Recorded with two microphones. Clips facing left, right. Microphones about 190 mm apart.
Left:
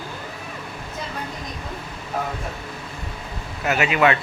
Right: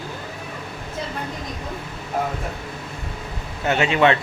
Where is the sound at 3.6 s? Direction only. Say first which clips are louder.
Right 1 dB; 30° right (ahead or behind).